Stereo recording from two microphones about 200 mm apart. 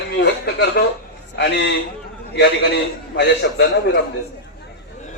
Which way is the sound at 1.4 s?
60° left (ahead or behind).